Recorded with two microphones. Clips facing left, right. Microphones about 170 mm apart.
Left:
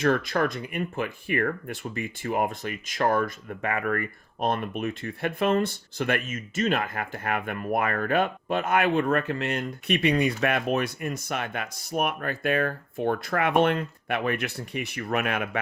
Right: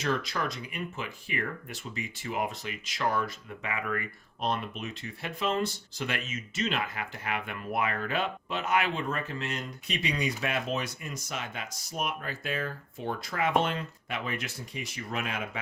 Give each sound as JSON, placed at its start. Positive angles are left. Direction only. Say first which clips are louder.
{"t": 0.0, "sound": "speech", "louder": "left 7 dB", "side_deg": 55}